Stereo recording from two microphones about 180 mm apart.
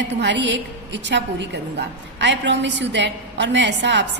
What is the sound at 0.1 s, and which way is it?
A woman's voice, 75° right (ahead or behind).